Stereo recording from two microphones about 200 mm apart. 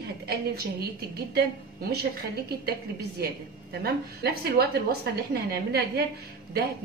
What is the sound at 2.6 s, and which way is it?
A woman's voice, 55° right (ahead or behind).